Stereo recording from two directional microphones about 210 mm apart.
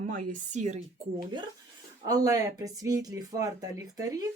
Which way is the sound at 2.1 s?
15° right (ahead or behind).